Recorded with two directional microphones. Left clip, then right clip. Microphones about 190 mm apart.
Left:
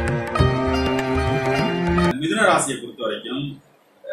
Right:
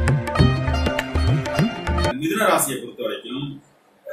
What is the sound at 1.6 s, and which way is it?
Music, centre (ahead or behind).